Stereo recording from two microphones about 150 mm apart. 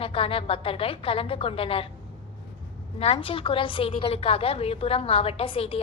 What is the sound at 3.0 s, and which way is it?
A woman's voice, 40° left (ahead or behind).